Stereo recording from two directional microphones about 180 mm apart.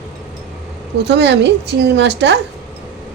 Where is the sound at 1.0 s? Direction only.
70° right (ahead or behind).